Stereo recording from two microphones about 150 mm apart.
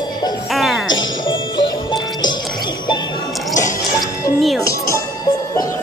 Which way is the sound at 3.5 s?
55° left (ahead or behind).